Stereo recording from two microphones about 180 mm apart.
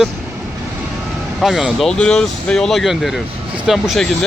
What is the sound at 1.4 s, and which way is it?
Speech, centre (ahead or behind).